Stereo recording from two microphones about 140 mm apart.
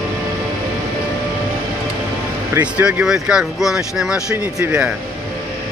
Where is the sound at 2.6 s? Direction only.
10° right (ahead or behind).